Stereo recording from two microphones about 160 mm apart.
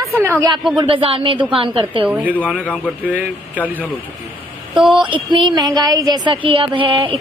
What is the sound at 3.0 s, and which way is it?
Speech, 10° right (ahead or behind).